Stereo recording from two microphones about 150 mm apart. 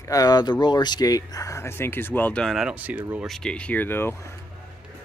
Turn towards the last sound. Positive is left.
turn(degrees=15)  # may be behind; listen again after turning